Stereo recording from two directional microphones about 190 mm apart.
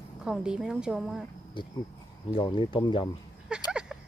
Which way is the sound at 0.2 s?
5° right (ahead or behind).